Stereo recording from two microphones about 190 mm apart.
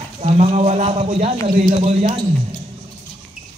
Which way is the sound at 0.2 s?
35° right (ahead or behind).